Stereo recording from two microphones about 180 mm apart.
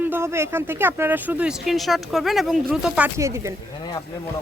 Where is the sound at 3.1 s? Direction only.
15° right (ahead or behind).